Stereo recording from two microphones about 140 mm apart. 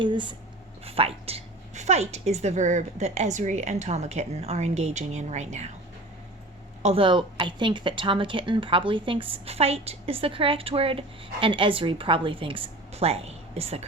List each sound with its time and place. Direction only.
0.0 s a woman's voice: 35° right (ahead or behind); by 5.7 s 55° right (ahead or behind)
6.8 s a woman's voice: 40° right (ahead or behind)